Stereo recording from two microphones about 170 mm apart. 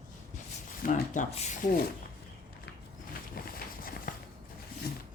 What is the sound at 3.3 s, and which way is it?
Run, 60° left (ahead or behind).